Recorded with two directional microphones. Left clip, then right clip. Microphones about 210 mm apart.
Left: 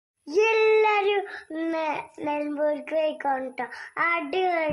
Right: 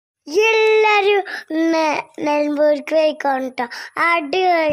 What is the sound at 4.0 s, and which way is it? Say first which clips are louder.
Speech: right 8 dB; 35° right (ahead or behind).